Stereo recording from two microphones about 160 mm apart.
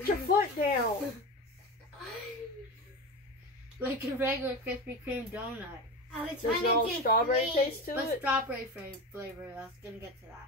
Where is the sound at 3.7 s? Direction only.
10° right (ahead or behind).